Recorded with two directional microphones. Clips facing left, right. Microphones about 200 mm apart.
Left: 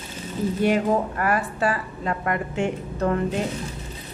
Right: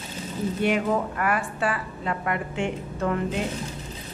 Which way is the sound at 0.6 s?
40° left (ahead or behind).